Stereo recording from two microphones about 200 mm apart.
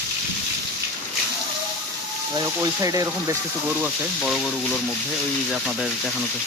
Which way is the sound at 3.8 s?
5° right (ahead or behind).